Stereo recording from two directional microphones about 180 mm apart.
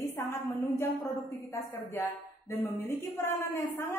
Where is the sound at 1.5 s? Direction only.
15° left (ahead or behind).